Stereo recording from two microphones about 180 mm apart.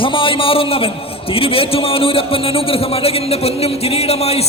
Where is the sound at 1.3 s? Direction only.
30° left (ahead or behind).